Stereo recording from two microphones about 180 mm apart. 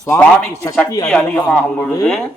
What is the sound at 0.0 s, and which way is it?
Speech, 15° left (ahead or behind).